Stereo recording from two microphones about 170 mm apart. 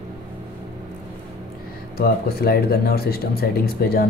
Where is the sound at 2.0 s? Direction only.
65° left (ahead or behind).